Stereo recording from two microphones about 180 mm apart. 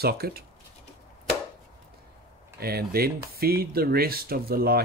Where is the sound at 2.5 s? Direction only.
60° right (ahead or behind).